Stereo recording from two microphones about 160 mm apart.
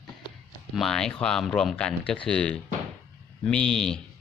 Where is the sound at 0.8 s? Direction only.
5° left (ahead or behind).